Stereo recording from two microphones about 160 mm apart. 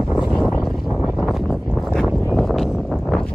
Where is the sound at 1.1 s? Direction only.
Centre (ahead or behind).